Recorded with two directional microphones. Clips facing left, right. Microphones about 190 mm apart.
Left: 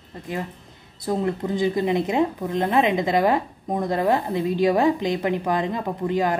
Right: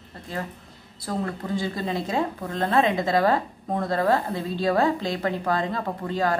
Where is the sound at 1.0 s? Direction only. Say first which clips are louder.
Left 5 dB; 20° left (ahead or behind).